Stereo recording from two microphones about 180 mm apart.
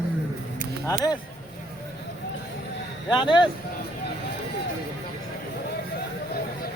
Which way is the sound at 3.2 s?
25° left (ahead or behind).